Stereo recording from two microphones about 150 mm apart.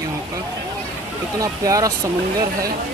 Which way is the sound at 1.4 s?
20° right (ahead or behind).